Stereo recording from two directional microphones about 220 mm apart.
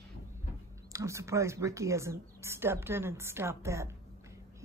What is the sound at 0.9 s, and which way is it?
Speech, 15° right (ahead or behind).